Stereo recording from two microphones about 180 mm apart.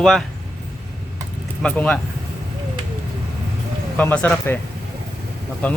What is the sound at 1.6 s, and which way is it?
Speech, 5° left (ahead or behind).